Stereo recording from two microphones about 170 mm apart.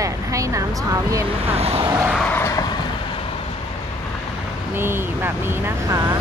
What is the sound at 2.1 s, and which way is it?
Vehicle, 10° left (ahead or behind).